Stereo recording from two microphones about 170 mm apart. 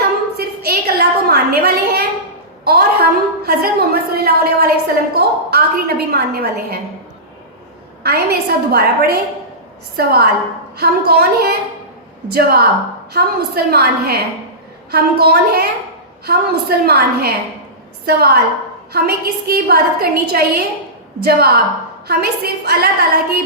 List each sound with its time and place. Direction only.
0.0 s a sound: 65° right (ahead or behind)
2.6 s a woman's voice: 65° right (ahead or behind)
8.0 s a woman's voice: 70° right (ahead or behind)